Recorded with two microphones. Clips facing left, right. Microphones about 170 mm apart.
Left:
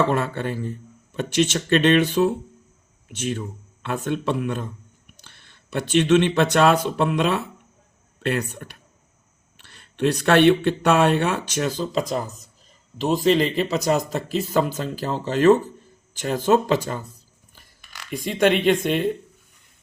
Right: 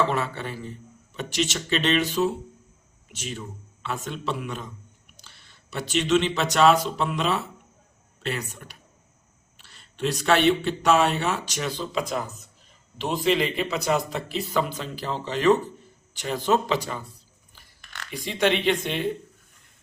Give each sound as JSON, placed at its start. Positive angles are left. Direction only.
{"t": 0.1, "sound": "speech", "side_deg": 50}
{"t": 5.7, "sound": "speech", "side_deg": 55}
{"t": 17.7, "sound": "a sound", "side_deg": 5}
{"t": 18.1, "sound": "speech", "side_deg": 50}